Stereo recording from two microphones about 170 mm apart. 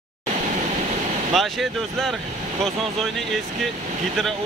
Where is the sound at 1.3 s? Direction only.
Centre (ahead or behind).